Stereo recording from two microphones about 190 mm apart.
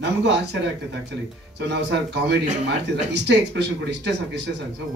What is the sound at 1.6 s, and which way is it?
Speech, 65° right (ahead or behind).